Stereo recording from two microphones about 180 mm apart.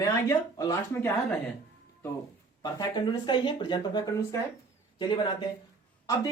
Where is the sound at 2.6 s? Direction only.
25° left (ahead or behind).